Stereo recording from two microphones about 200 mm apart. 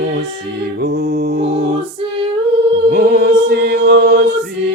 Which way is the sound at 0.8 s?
50° right (ahead or behind).